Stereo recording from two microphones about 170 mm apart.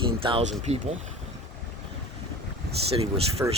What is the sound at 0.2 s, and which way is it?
Speech, 30° right (ahead or behind).